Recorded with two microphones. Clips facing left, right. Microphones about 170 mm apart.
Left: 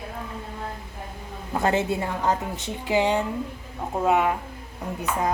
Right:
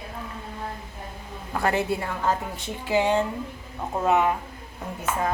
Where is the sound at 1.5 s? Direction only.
25° left (ahead or behind).